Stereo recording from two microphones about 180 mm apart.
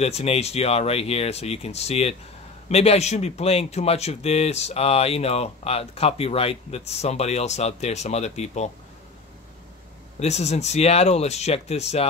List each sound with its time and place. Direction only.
0.0 s speech: 35° left (ahead or behind)
10.1 s speech: 40° left (ahead or behind)